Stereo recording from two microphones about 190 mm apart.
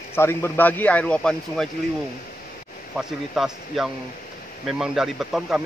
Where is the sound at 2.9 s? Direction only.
Centre (ahead or behind).